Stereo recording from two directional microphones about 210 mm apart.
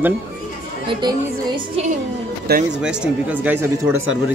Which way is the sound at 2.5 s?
50° right (ahead or behind).